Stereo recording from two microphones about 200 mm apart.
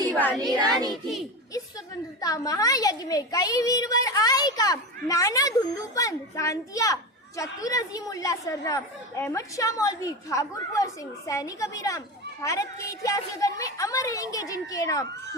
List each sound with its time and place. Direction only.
0.1 s speech: 10° left (ahead or behind)
0.6 s child singing: 20° right (ahead or behind)
2.2 s a child's voice: 20° left (ahead or behind)